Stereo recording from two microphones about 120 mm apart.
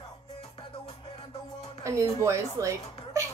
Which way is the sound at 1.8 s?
25° right (ahead or behind).